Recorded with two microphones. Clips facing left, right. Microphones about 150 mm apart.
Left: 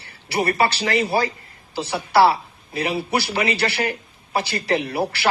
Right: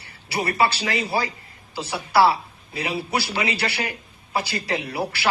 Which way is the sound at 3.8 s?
55° left (ahead or behind).